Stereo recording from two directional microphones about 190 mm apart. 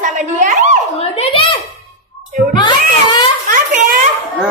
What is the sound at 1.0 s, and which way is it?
Speech, 30° left (ahead or behind).